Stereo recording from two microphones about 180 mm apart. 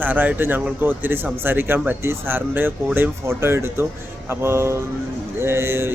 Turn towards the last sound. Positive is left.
turn(degrees=-15)  # may be behind; listen again after turning